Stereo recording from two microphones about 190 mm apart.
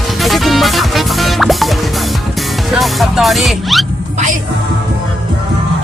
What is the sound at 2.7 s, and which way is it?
Speech, centre (ahead or behind).